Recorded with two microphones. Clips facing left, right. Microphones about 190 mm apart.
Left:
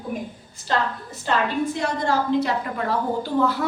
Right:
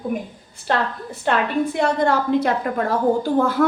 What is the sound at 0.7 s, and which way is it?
A woman's voice, 60° right (ahead or behind).